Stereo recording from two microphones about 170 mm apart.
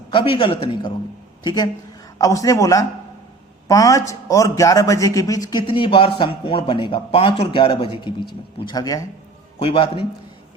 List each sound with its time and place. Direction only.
0.1 s a man's voice: 30° left (ahead or behind)
9.6 s a man's voice: 35° left (ahead or behind)